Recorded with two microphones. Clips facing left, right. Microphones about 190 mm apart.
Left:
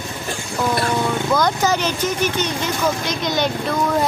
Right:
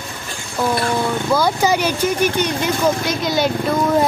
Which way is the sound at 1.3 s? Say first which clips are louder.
Right 3 dB; 10° right (ahead or behind).